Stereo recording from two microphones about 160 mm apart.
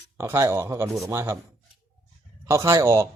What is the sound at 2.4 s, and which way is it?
Speech, 20° right (ahead or behind).